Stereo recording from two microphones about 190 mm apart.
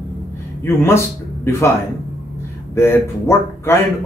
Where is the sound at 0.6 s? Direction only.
15° left (ahead or behind).